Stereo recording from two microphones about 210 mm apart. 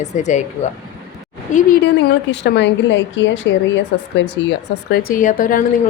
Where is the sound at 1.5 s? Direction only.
35° left (ahead or behind).